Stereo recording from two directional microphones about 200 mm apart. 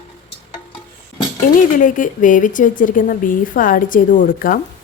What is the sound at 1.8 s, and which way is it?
A woman's voice, 40° left (ahead or behind).